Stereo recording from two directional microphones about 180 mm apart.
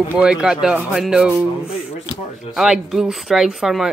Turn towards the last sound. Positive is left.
turn(degrees=0)  # may be behind; listen again after turning